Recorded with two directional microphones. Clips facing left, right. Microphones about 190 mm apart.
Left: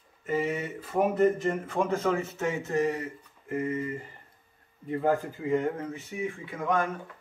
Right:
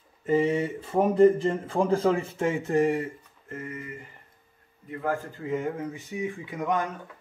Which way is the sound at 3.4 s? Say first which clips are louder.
Left 7 dB; 20° left (ahead or behind).